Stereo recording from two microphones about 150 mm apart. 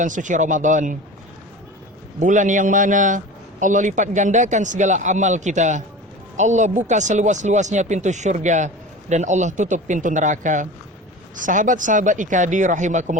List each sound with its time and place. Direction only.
0.0 s speech: 60° right (ahead or behind)
2.1 s speech: 55° right (ahead or behind)